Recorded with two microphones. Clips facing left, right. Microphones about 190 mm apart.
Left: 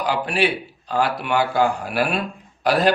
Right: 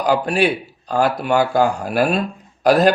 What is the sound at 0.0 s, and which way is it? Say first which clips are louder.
Speech: right 4 dB; 45° right (ahead or behind).